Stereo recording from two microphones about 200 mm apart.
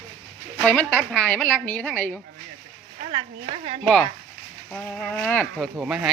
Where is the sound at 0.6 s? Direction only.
5° left (ahead or behind).